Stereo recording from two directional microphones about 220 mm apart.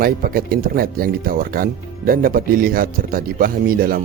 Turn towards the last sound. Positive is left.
turn(degrees=-40)  # may be behind; listen again after turning